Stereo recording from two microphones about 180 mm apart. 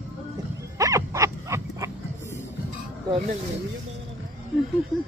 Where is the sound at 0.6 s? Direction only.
20° right (ahead or behind).